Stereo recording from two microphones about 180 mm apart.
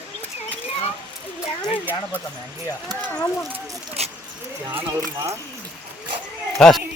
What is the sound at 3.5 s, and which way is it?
Speech, 35° right (ahead or behind).